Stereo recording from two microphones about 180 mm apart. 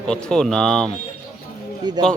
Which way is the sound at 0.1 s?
5° left (ahead or behind).